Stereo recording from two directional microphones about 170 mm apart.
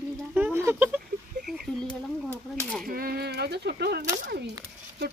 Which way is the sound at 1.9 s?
5° left (ahead or behind).